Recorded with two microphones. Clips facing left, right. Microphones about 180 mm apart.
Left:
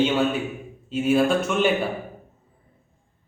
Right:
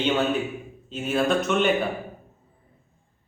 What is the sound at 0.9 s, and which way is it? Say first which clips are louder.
Speech: left 4 dB; 5° left (ahead or behind).